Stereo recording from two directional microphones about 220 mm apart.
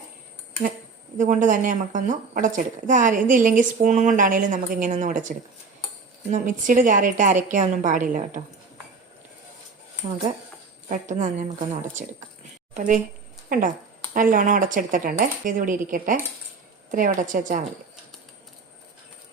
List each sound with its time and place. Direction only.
1.2 s a woman's voice: 35° right (ahead or behind)
10.8 s a woman's voice: 35° right (ahead or behind)